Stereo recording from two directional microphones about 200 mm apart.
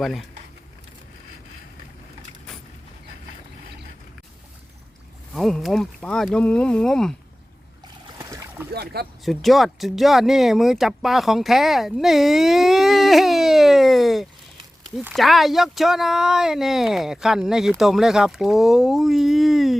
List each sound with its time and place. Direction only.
0.0 s speech: centre (ahead or behind)
5.3 s speech: centre (ahead or behind)
8.2 s a sound: 15° right (ahead or behind)
8.7 s speech: 50° right (ahead or behind)
9.2 s speech: centre (ahead or behind)